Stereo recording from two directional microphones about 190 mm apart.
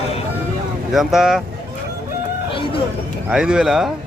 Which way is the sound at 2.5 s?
30° left (ahead or behind).